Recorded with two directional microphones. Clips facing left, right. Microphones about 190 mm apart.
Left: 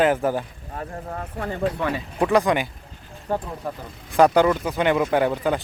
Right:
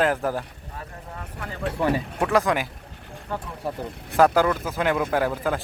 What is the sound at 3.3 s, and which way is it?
Speech, 40° left (ahead or behind).